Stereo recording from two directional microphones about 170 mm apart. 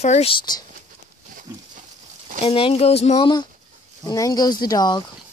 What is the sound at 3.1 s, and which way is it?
Speech, 25° left (ahead or behind).